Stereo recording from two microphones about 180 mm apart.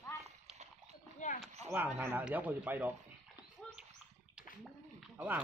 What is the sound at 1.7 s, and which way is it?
Speech, 10° right (ahead or behind).